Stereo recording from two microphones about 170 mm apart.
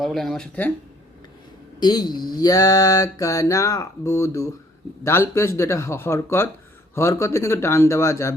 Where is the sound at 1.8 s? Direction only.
25° left (ahead or behind).